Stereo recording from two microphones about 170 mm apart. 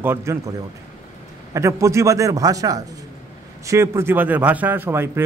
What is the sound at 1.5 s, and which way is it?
A man's voice, 15° right (ahead or behind).